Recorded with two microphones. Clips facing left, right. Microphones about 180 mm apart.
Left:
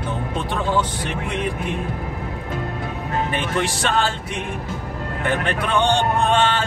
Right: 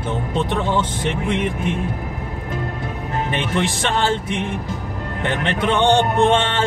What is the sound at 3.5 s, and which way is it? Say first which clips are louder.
Speech: even; 20° right (ahead or behind).